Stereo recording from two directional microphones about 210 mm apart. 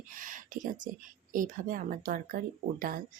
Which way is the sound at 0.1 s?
40° right (ahead or behind).